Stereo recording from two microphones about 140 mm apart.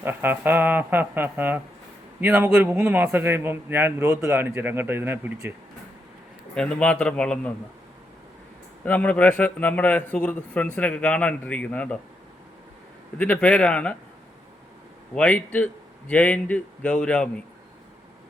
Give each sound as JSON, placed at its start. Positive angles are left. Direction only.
{"t": 0.0, "sound": "a man's voice", "side_deg": -15}
{"t": 6.5, "sound": "a man's voice", "side_deg": 5}
{"t": 8.8, "sound": "a man's voice", "side_deg": 10}
{"t": 13.1, "sound": "a man's voice", "side_deg": 10}
{"t": 15.1, "sound": "a man's voice", "side_deg": 10}